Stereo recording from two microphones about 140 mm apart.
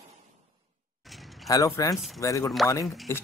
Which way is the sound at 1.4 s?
25° left (ahead or behind).